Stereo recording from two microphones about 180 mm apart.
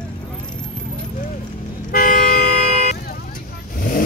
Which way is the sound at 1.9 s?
50° left (ahead or behind).